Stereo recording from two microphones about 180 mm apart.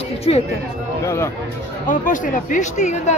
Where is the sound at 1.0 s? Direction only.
15° left (ahead or behind).